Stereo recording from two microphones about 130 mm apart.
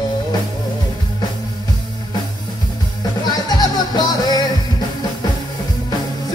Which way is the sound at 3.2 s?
30° left (ahead or behind).